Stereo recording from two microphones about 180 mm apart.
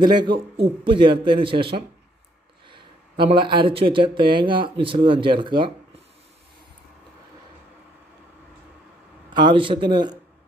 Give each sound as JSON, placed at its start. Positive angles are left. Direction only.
{"t": 0.0, "sound": "a man's voice", "side_deg": -25}
{"t": 9.3, "sound": "a man's voice", "side_deg": -25}